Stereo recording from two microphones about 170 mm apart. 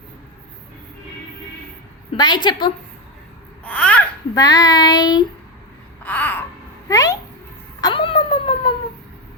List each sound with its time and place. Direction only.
2.1 s child singing: 25° left (ahead or behind)
3.6 s babbling: 10° left (ahead or behind)
4.4 s child singing: 20° left (ahead or behind)
6.0 s a sound: 10° left (ahead or behind)
6.8 s speech: 20° left (ahead or behind)
7.8 s a sound: 25° left (ahead or behind)